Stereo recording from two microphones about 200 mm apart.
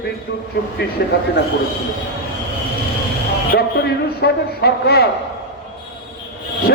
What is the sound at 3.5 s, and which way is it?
A man's voice, 55° left (ahead or behind).